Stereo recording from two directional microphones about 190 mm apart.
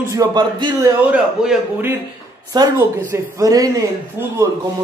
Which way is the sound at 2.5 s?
20° right (ahead or behind).